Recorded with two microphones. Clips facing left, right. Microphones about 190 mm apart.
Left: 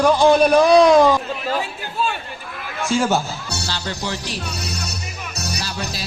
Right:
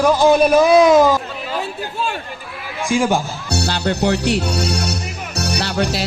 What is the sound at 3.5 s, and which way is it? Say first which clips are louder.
Music: right 11 dB; 60° right (ahead or behind).